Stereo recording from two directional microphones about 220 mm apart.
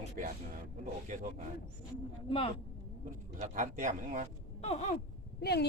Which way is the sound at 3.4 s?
35° right (ahead or behind).